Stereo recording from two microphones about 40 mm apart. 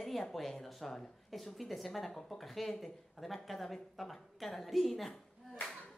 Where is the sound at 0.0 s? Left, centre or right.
Centre.